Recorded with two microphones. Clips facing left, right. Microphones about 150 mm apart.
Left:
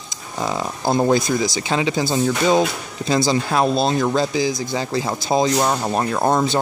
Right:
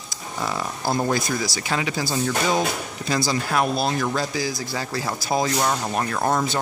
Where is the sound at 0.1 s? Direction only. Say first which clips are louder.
Left 4 dB; 20° left (ahead or behind).